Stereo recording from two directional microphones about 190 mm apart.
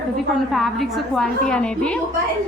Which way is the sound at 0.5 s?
Centre (ahead or behind).